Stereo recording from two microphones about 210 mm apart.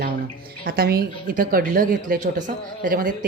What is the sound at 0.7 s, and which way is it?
Speech, 45° right (ahead or behind).